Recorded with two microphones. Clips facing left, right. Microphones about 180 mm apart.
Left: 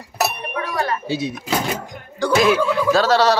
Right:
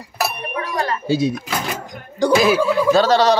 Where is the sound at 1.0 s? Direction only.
40° right (ahead or behind).